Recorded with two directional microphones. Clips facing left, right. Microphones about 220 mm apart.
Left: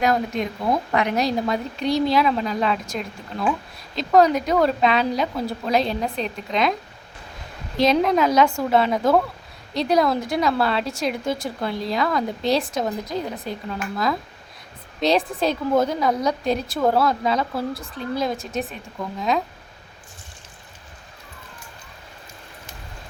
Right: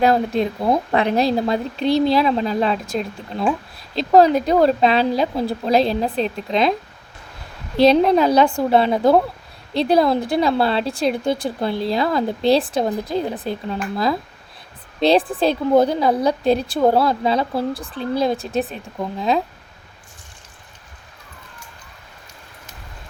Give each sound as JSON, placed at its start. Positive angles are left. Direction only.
{"t": 0.0, "sound": "a woman's voice", "side_deg": -30}
{"t": 7.9, "sound": "a woman's voice", "side_deg": -35}